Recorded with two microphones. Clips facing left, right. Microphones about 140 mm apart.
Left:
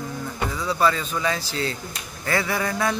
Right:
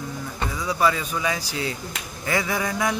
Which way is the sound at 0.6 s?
10° right (ahead or behind).